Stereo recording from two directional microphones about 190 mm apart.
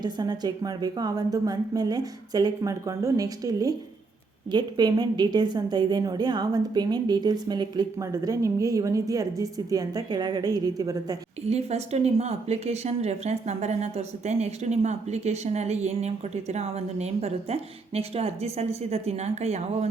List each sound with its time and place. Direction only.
0.0 s a woman's voice: 20° right (ahead or behind)
11.4 s speech: 35° right (ahead or behind)